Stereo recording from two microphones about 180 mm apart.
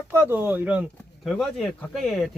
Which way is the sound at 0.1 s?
10° right (ahead or behind).